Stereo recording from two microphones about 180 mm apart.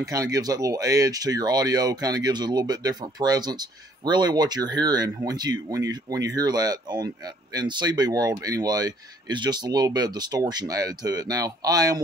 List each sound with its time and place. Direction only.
0.0 s speech: 20° right (ahead or behind)